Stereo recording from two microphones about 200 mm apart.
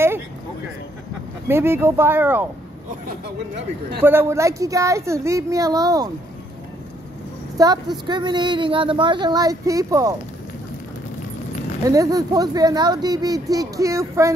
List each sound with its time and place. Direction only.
1.5 s speech: 10° right (ahead or behind)
4.0 s speech: 10° right (ahead or behind)
7.5 s a woman's voice: 20° right (ahead or behind)
11.8 s speech: 15° right (ahead or behind)